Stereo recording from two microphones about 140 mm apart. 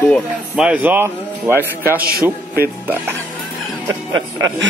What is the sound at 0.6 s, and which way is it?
Speech, 10° right (ahead or behind).